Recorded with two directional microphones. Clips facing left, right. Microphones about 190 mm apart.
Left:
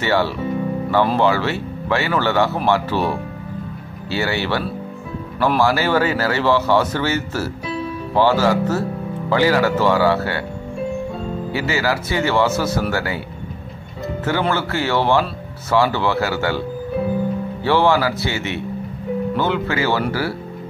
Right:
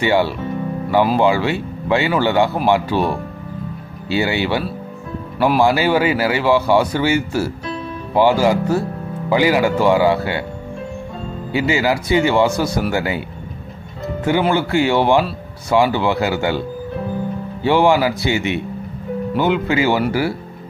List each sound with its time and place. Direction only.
0.0 s speech: 15° right (ahead or behind)
11.5 s speech: 15° right (ahead or behind)
14.5 s speech: 15° right (ahead or behind)
17.6 s speech: 15° right (ahead or behind)